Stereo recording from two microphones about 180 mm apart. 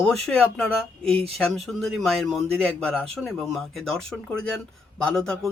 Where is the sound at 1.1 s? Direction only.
30° right (ahead or behind).